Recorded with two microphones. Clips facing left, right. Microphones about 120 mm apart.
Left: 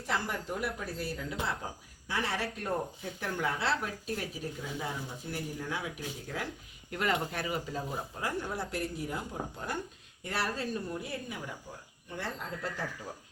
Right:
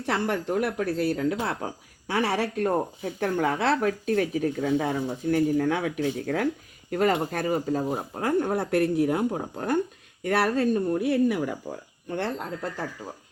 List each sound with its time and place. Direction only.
0.0 s speech: 65° right (ahead or behind)
2.6 s speech: 50° right (ahead or behind)
6.9 s speech: 45° right (ahead or behind); by 12.5 s 70° right (ahead or behind)